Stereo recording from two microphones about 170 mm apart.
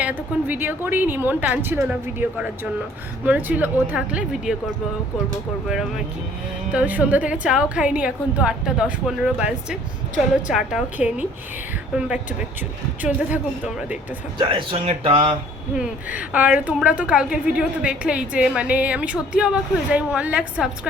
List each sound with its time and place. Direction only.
0.0 s a woman's voice: 10° right (ahead or behind)
6.7 s a woman's voice: 10° right (ahead or behind)
14.3 s speech: 30° right (ahead or behind)
15.7 s a woman's voice: 5° right (ahead or behind)